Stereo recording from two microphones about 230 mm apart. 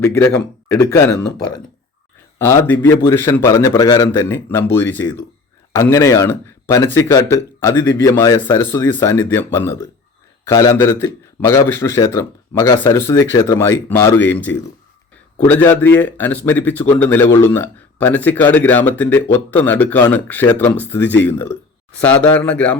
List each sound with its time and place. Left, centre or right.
0.0 s a man's voice: centre